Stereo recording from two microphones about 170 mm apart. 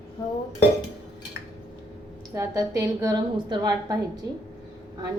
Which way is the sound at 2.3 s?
20° right (ahead or behind).